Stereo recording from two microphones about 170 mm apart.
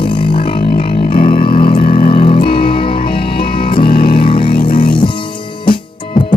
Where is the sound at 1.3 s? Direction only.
60° left (ahead or behind).